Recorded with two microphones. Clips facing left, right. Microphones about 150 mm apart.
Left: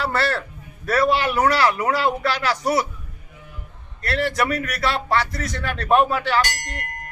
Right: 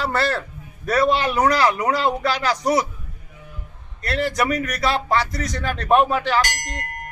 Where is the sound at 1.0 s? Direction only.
5° left (ahead or behind).